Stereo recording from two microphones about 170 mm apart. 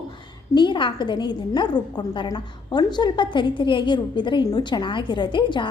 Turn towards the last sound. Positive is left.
turn(degrees=30)  # may be behind; listen again after turning